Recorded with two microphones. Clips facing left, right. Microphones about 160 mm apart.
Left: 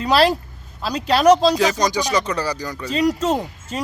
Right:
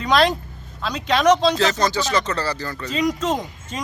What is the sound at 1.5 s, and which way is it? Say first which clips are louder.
Speech: left 1 dB; 10° left (ahead or behind).